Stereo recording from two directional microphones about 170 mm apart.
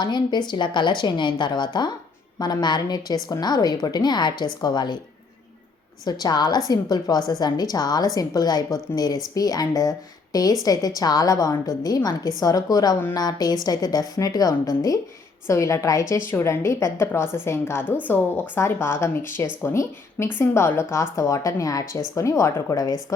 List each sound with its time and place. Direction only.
0.0 s a woman's voice: 25° left (ahead or behind)
6.1 s a woman's voice: 25° left (ahead or behind)